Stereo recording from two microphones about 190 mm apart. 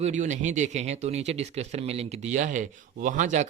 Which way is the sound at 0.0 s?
40° right (ahead or behind).